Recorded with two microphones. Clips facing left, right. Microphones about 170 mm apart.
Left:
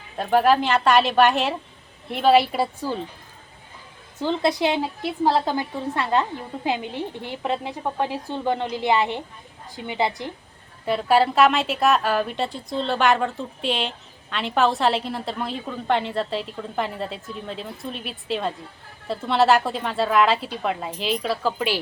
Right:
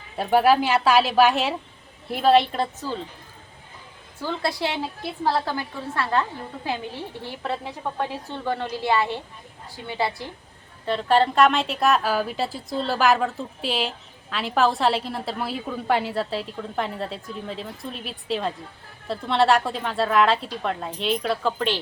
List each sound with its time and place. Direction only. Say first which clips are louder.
0.2 s a woman's voice: even; 5° right (ahead or behind); by 3.0 s 10° left (ahead or behind)
4.2 s a woman's voice: left 5 dB; 20° left (ahead or behind)
10.8 s a woman's voice: left 1 dB; 10° left (ahead or behind)